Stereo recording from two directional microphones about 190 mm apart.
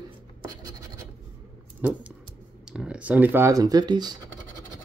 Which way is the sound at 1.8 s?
10° right (ahead or behind).